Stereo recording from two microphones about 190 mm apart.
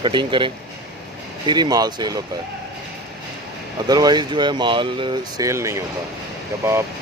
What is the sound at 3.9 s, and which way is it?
Speech, 20° right (ahead or behind).